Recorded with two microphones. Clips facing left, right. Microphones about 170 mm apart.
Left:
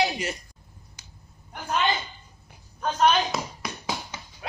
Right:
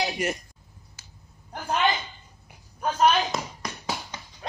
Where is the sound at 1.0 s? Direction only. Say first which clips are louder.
Left 1 dB; 15° left (ahead or behind).